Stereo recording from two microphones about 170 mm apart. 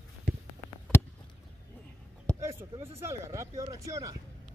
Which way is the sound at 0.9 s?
15° left (ahead or behind).